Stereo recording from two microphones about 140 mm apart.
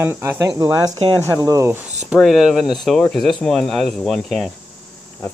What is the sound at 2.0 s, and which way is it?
Speech, 5° right (ahead or behind).